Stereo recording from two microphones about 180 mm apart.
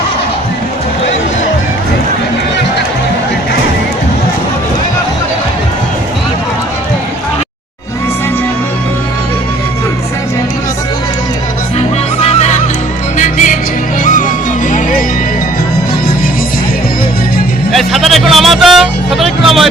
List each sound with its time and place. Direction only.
12.2 s music: 35° left (ahead or behind)
17.7 s music: centre (ahead or behind)